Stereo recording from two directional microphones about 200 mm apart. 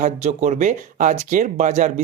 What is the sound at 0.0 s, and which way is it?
Speech, 35° right (ahead or behind).